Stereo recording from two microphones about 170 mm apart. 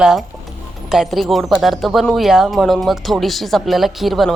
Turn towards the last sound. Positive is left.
turn(degrees=0)  # may be behind; listen again after turning